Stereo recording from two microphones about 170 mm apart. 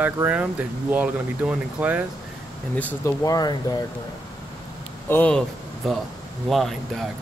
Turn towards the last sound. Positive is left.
turn(degrees=0)  # may be behind; listen again after turning